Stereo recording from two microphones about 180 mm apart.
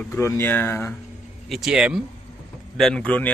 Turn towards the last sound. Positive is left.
turn(degrees=5)  # may be behind; listen again after turning